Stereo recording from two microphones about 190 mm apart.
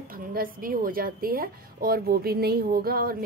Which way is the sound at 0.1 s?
50° right (ahead or behind).